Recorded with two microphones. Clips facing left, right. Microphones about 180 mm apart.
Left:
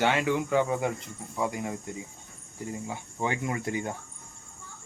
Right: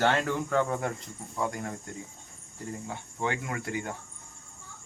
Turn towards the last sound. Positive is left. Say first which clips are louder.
# left 3 dB
turn(degrees=20)  # may be behind; listen again after turning